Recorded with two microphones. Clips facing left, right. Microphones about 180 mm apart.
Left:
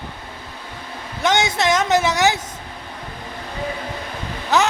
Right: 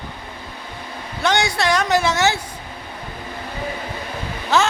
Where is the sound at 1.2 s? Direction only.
20° left (ahead or behind).